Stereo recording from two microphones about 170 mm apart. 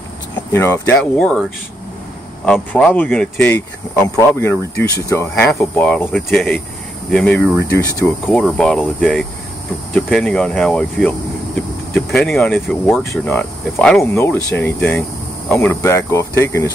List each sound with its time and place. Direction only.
0.5 s speech: 15° left (ahead or behind)
2.4 s speech: 5° left (ahead or behind)
13.0 s speech: 15° left (ahead or behind)